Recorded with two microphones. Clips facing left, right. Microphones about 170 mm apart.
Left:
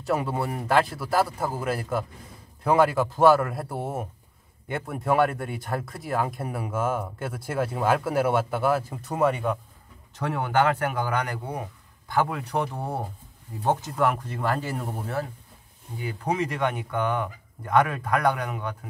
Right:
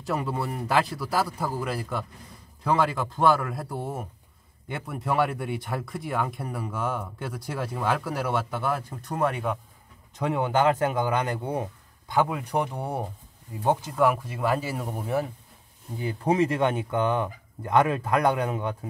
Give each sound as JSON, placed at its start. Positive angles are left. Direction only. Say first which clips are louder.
{"t": 0.0, "sound": "speech", "louder": "left 2 dB", "side_deg": 0}
{"t": 10.1, "sound": "speech", "louder": "even", "side_deg": -20}
{"t": 16.0, "sound": "speech", "louder": "right 4 dB", "side_deg": -30}